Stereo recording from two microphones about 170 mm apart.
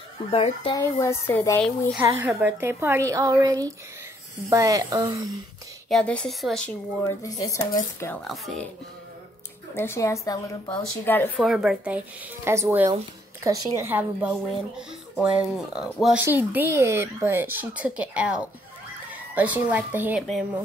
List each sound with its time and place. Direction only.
0.3 s speech: 35° left (ahead or behind)
0.7 s a woman's voice: 15° left (ahead or behind)
2.0 s a woman's voice: 15° right (ahead or behind)
5.9 s speech: 5° left (ahead or behind)
7.2 s speech: 20° left (ahead or behind)
8.2 s speech: centre (ahead or behind)
9.8 s a woman's voice: 15° left (ahead or behind)
11.3 s speech: centre (ahead or behind)